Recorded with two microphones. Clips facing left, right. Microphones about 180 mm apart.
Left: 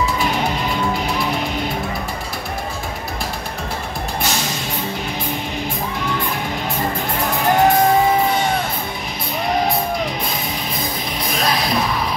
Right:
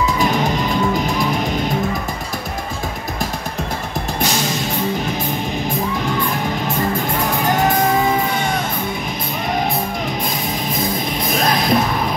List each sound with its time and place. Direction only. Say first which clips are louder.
11.4 s music: right 3 dB; 50° right (ahead or behind)